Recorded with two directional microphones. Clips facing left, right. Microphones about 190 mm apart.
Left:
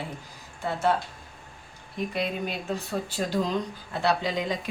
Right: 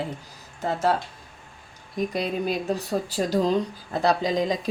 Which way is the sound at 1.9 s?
40° right (ahead or behind).